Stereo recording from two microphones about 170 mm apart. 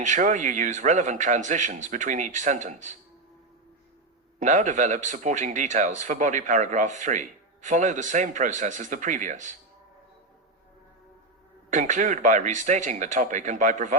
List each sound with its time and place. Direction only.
0.0 s a man's voice: 45° right (ahead or behind)
4.4 s a man's voice: 45° right (ahead or behind)
11.7 s a man's voice: 45° right (ahead or behind)